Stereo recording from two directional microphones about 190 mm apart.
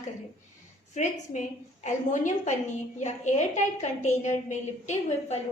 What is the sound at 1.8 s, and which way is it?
A woman's voice, 40° left (ahead or behind).